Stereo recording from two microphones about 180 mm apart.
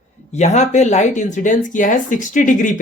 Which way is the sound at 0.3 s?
40° left (ahead or behind).